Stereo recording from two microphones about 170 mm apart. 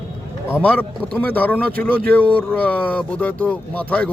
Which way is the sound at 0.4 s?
10° left (ahead or behind).